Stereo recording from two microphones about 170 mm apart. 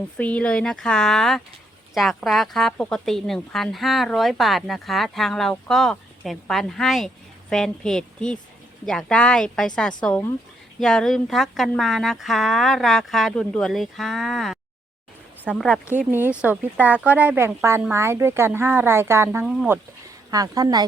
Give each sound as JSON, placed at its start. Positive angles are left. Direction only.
{"t": 0.2, "sound": "speech", "side_deg": 10}